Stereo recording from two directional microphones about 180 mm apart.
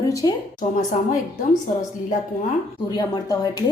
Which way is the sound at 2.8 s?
20° left (ahead or behind).